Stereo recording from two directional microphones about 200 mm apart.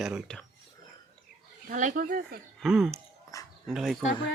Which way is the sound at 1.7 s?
40° right (ahead or behind).